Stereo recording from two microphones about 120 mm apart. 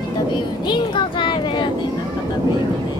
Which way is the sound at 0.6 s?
40° left (ahead or behind).